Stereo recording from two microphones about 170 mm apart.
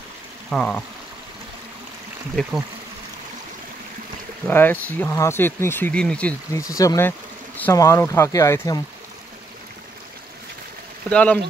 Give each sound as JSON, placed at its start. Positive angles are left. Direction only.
{"t": 0.5, "sound": "speech", "side_deg": 5}
{"t": 4.5, "sound": "speech", "side_deg": 10}
{"t": 11.1, "sound": "speech", "side_deg": 10}